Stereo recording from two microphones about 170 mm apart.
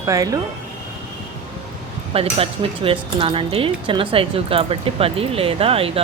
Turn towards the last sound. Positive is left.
turn(degrees=-35)  # may be behind; listen again after turning